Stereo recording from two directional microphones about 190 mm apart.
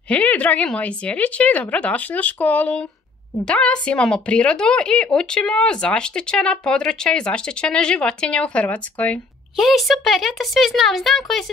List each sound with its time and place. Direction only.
0.1 s a woman's voice: 5° left (ahead or behind)